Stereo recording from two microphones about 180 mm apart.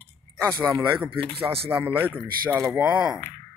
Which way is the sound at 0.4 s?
15° right (ahead or behind).